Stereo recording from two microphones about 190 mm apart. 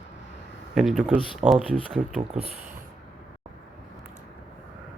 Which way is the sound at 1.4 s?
25° right (ahead or behind).